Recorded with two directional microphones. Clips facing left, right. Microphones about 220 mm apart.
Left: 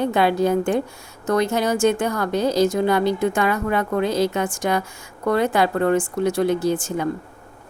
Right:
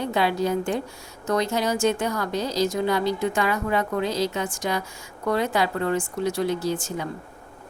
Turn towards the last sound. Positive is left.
turn(degrees=55)  # may be behind; listen again after turning